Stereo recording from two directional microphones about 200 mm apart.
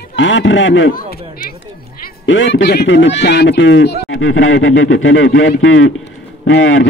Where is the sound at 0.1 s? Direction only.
65° left (ahead or behind).